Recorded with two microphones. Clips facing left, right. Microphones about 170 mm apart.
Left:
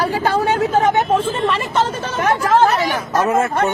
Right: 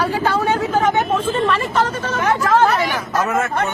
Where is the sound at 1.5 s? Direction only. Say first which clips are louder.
Even; 25° left (ahead or behind).